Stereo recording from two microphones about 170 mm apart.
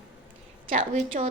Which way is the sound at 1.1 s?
50° right (ahead or behind).